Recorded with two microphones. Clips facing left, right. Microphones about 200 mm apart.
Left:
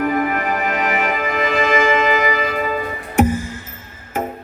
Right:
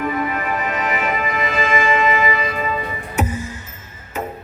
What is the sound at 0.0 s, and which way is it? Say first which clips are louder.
Music: left 3 dB; 60° left (ahead or behind).